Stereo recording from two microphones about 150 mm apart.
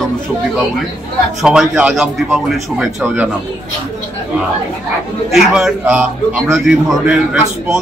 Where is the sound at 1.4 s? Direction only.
5° right (ahead or behind).